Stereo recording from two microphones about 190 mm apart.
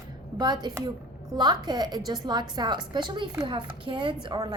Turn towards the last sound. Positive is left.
turn(degrees=-20)  # may be behind; listen again after turning